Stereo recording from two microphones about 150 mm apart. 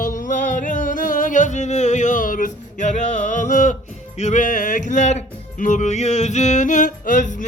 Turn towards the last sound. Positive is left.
turn(degrees=55)  # may be behind; listen again after turning